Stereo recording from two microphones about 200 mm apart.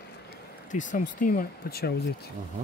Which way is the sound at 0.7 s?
40° left (ahead or behind).